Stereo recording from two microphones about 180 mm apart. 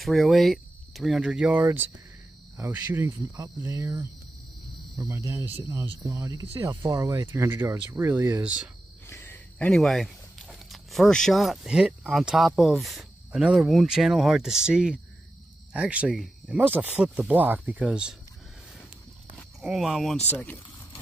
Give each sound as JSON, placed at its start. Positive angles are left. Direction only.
{"t": 0.0, "sound": "speech", "side_deg": 0}
{"t": 9.0, "sound": "speech", "side_deg": 15}
{"t": 19.6, "sound": "speech", "side_deg": 0}